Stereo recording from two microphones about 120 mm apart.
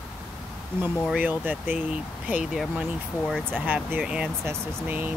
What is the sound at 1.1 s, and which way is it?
Speech, 15° right (ahead or behind).